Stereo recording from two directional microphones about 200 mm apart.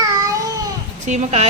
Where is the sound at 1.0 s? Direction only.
35° right (ahead or behind).